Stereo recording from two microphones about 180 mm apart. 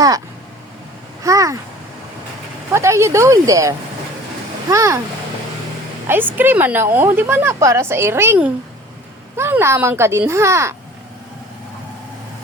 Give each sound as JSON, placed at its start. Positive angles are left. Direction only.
{"t": 1.2, "sound": "a sound", "side_deg": -20}
{"t": 2.7, "sound": "a woman's voice", "side_deg": -15}
{"t": 6.1, "sound": "a woman's voice", "side_deg": -10}